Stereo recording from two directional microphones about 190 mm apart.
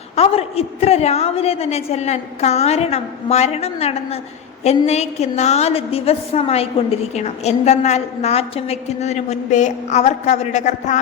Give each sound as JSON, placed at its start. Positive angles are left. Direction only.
{"t": 0.2, "sound": "a woman's voice", "side_deg": 30}